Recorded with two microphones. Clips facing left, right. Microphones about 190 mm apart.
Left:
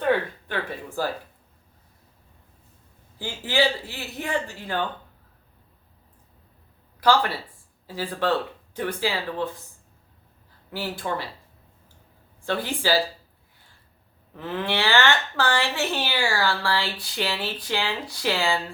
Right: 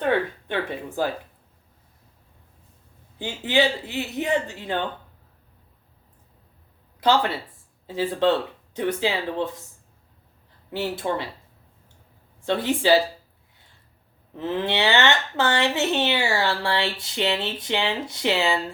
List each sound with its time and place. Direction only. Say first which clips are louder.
0.4 s speech: right 3 dB; 20° right (ahead or behind)
3.2 s speech: right 2 dB; 20° right (ahead or behind)
7.0 s speech: even; 20° right (ahead or behind)
10.7 s speech: right 3 dB; 20° right (ahead or behind)
12.4 s speech: right 4 dB; 25° right (ahead or behind)
14.3 s speech: right 3 dB; 25° right (ahead or behind)